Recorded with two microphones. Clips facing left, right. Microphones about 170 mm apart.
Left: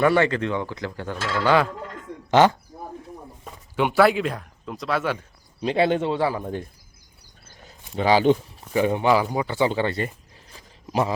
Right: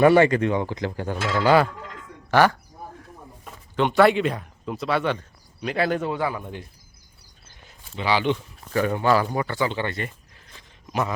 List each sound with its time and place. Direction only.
0.0 s speech: 15° right (ahead or behind)
2.3 s a man's voice: 20° left (ahead or behind)
3.8 s speech: 5° left (ahead or behind)
5.5 s a man's voice: 30° left (ahead or behind)
7.6 s a sound: 40° left (ahead or behind)
8.7 s speech: 20° left (ahead or behind)
9.6 s a man's voice: 25° left (ahead or behind)
10.5 s a sound: 30° left (ahead or behind)